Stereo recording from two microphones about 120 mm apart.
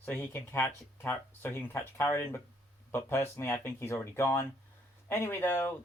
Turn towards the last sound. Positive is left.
turn(degrees=20)  # may be behind; listen again after turning